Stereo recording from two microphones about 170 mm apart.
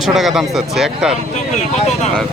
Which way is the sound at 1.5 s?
40° left (ahead or behind).